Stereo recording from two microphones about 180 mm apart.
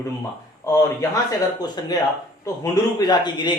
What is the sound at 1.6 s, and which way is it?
Speech, 25° left (ahead or behind).